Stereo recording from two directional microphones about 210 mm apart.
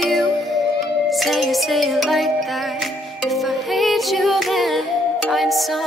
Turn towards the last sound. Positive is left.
turn(degrees=0)  # may be behind; listen again after turning